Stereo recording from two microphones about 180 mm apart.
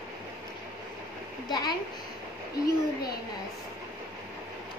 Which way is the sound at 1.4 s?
20° left (ahead or behind).